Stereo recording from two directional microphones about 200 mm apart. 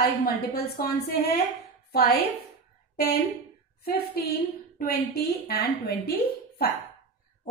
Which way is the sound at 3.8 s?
50° left (ahead or behind).